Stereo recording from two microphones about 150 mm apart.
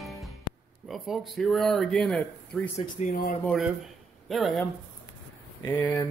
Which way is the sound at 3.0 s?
50° left (ahead or behind).